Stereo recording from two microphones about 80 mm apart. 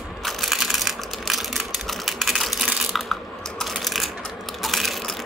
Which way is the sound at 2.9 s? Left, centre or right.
Centre.